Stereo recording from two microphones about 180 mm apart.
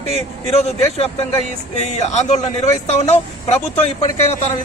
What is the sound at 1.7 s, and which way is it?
A man's voice, 40° left (ahead or behind).